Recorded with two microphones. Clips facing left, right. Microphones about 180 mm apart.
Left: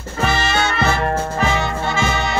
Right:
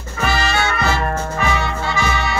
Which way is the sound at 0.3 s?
20° left (ahead or behind).